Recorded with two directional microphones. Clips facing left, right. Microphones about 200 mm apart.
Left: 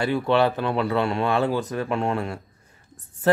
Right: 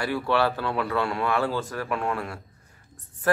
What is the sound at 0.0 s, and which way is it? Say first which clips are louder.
Speech: left 4 dB; 20° left (ahead or behind).